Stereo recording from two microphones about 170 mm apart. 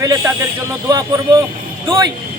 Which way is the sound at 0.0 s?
20° right (ahead or behind).